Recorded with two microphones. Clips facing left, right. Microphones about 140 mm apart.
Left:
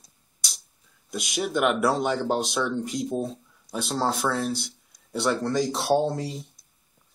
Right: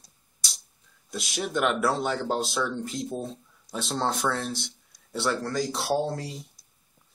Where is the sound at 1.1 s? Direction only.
5° left (ahead or behind).